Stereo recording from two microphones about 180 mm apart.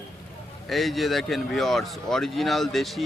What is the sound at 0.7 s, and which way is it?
Speech, centre (ahead or behind).